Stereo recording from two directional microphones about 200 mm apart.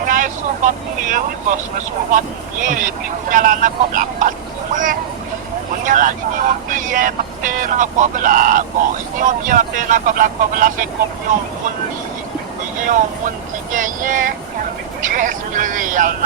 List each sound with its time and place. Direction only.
0.0 s speech: 40° right (ahead or behind)
12.8 s speech: 40° right (ahead or behind)